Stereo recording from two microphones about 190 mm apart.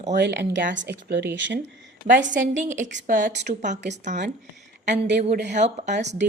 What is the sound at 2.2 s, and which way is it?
Speech, 75° right (ahead or behind).